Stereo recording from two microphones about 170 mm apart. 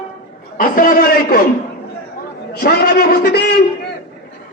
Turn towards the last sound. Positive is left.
turn(degrees=70)  # may be behind; listen again after turning